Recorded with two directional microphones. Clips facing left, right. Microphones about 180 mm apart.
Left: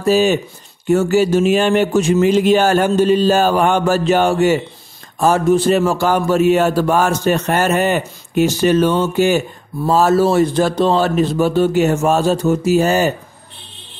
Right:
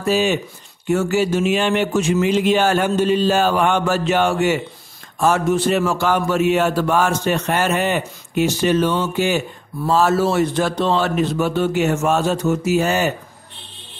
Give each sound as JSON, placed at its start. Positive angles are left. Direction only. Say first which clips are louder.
{"t": 0.0, "sound": "a man's voice", "louder": "left 4 dB", "side_deg": 40}